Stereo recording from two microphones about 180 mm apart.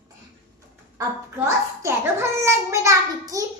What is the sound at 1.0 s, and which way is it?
A child's voice, 15° right (ahead or behind).